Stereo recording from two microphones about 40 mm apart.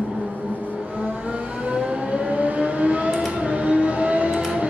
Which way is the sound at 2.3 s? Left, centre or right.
Right.